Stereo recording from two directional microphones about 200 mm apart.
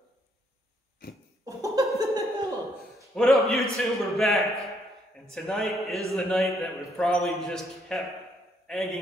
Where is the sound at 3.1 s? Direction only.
Centre (ahead or behind).